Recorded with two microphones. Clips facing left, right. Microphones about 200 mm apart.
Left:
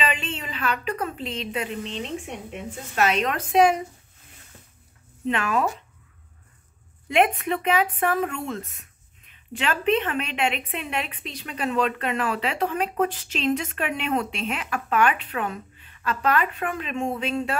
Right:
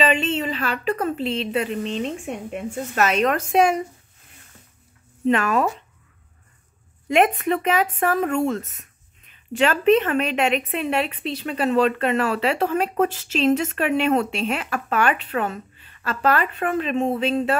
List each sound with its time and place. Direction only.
0.1 s a sound: 30° right (ahead or behind)
1.1 s speech: 30° right (ahead or behind)
2.5 s speech: 45° right (ahead or behind)
5.3 s speech: 45° right (ahead or behind)
7.1 s speech: 45° right (ahead or behind)
9.6 s speech: 45° right (ahead or behind)